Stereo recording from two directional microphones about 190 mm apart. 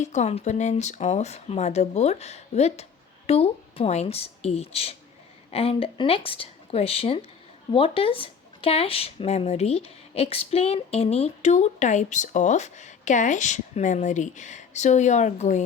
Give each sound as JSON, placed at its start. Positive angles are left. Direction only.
{"t": 0.0, "sound": "speech", "side_deg": 40}